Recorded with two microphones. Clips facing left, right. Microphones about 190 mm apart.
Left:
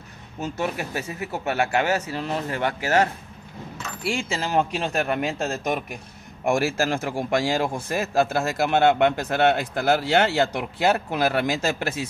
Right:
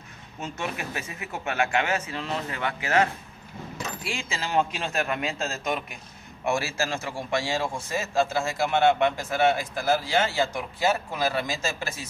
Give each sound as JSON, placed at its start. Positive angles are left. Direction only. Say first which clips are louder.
{"t": 0.4, "sound": "speech", "louder": "left 5 dB", "side_deg": 40}
{"t": 6.4, "sound": "a man's voice", "louder": "left 5 dB", "side_deg": 50}